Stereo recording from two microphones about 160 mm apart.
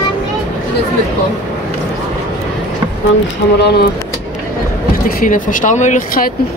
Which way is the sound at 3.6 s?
90° left.